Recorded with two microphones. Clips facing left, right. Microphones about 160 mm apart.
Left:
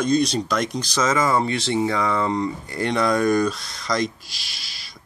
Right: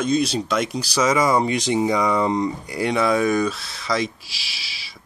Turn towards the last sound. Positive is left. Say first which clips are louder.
# right 3 dB
turn(degrees=-5)  # may be behind; listen again after turning